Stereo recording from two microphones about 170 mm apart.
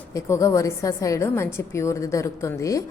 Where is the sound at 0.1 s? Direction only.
20° left (ahead or behind).